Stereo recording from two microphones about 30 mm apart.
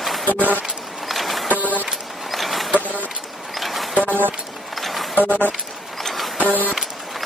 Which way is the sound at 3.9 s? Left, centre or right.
Left.